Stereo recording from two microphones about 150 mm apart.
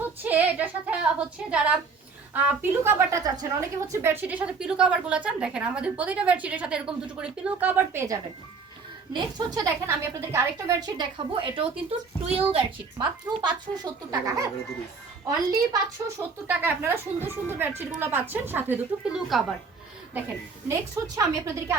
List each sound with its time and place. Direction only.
0.0 s a woman's voice: 10° right (ahead or behind); by 14.2 s 25° right (ahead or behind)
15.3 s a woman's voice: 25° right (ahead or behind)
16.5 s a woman's voice: 15° right (ahead or behind)
20.7 s a woman's voice: 20° right (ahead or behind)